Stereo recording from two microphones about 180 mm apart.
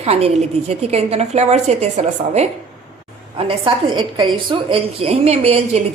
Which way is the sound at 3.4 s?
25° right (ahead or behind).